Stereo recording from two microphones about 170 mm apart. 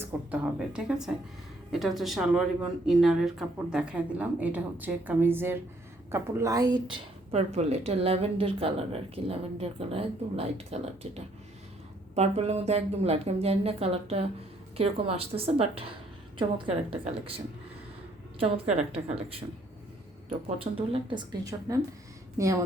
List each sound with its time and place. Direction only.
0.0 s speech: 5° right (ahead or behind); by 19.4 s 35° right (ahead or behind)
20.6 s a woman's voice: 30° right (ahead or behind); by 22.5 s 15° right (ahead or behind)